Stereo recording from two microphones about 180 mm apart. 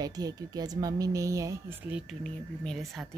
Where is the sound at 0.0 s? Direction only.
20° right (ahead or behind).